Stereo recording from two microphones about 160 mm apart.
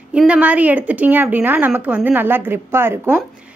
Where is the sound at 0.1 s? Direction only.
5° right (ahead or behind).